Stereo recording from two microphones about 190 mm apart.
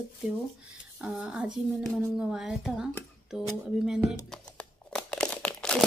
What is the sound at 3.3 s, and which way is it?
Music, centre (ahead or behind).